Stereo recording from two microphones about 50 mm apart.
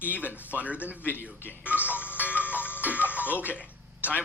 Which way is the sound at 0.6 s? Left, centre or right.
Right.